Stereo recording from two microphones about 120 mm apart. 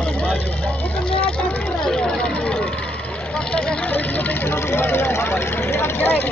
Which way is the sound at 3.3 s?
10° left (ahead or behind).